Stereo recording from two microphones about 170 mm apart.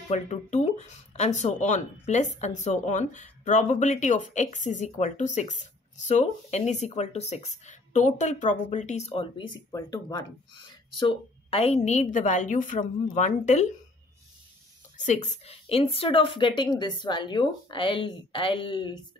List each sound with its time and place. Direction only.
0.1 s speech: 40° left (ahead or behind)
15.0 s a woman's voice: 45° left (ahead or behind); by 18.9 s 25° left (ahead or behind)